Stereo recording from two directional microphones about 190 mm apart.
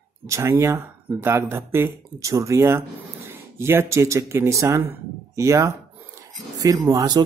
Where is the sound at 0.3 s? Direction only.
15° right (ahead or behind).